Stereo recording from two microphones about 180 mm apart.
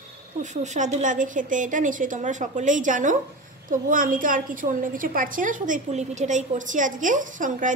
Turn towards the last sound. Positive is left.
turn(degrees=-45)  # may be behind; listen again after turning